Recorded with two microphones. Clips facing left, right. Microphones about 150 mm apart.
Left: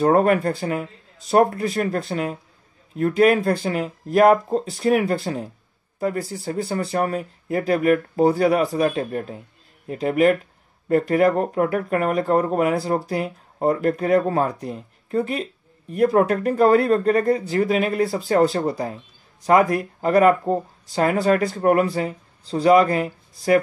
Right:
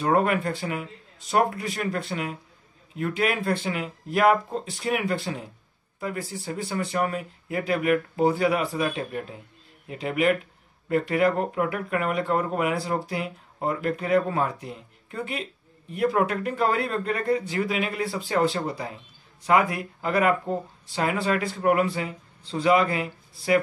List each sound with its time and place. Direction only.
0.0 s speech: 40° left (ahead or behind)